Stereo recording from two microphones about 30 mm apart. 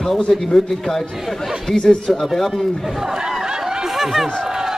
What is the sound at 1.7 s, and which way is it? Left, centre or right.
Speech, left.